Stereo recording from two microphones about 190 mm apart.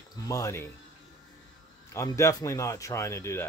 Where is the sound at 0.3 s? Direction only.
15° left (ahead or behind).